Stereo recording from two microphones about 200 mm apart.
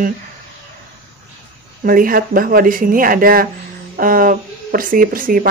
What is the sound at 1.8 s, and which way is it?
Speech, 45° right (ahead or behind).